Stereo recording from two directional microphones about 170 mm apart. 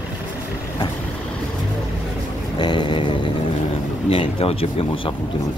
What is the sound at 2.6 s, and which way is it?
Vehicle, 25° left (ahead or behind).